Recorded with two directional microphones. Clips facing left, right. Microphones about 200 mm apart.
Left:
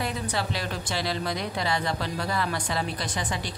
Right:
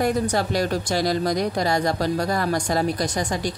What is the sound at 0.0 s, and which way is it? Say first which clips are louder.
Speech: right 8 dB; 45° right (ahead or behind).